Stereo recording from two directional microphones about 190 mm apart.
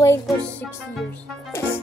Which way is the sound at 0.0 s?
10° left (ahead or behind).